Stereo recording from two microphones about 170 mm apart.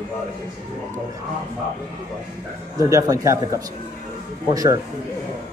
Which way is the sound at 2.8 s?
20° right (ahead or behind).